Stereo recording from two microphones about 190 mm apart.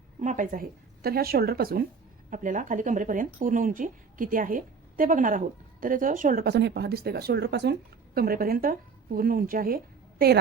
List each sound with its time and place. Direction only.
0.2 s speech: 40° right (ahead or behind)